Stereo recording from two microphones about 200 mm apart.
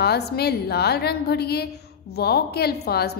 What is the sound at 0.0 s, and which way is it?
A woman's voice, 55° left (ahead or behind).